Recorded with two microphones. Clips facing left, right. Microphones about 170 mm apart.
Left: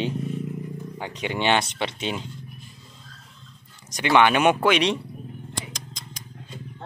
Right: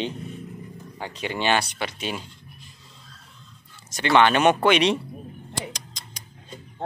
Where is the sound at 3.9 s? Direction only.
15° left (ahead or behind).